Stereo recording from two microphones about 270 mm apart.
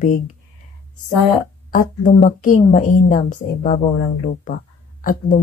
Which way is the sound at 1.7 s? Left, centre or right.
Left.